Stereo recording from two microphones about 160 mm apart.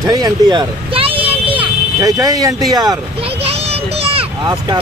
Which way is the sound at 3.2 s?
40° right (ahead or behind).